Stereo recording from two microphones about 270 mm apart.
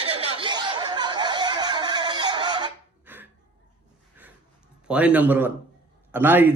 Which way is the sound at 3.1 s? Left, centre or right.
Centre.